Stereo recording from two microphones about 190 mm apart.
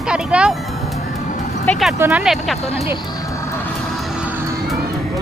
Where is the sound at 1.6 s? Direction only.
5° left (ahead or behind).